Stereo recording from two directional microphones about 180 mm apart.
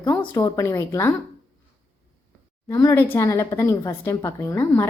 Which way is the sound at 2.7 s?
20° left (ahead or behind).